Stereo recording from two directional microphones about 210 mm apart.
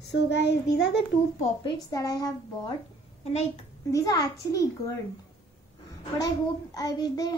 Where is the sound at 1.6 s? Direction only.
15° left (ahead or behind).